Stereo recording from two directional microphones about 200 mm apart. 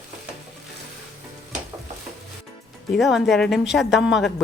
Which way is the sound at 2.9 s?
Centre (ahead or behind).